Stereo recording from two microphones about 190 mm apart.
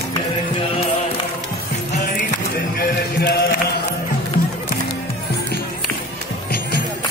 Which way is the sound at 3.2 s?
60° left (ahead or behind).